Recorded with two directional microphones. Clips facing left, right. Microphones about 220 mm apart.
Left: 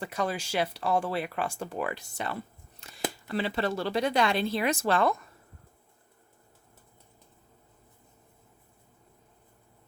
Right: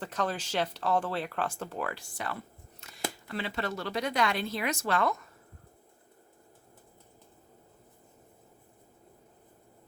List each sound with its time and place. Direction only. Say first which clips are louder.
0.0 s speech: left 2 dB; 10° left (ahead or behind)
2.8 s a sound: left 4 dB; 30° left (ahead or behind)
3.2 s speech: left 6 dB; 35° left (ahead or behind)